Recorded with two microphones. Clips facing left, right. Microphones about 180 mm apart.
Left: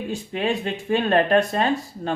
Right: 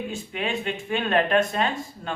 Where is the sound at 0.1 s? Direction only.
35° left (ahead or behind).